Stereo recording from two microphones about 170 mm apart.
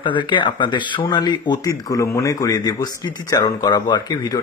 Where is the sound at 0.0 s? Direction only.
30° left (ahead or behind).